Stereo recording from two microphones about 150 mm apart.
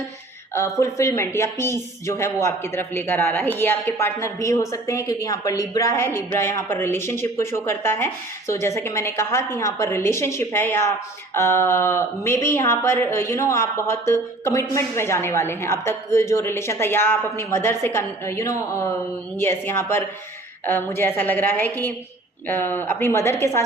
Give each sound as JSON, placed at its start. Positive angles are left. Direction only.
{"t": 0.5, "sound": "speech", "side_deg": 20}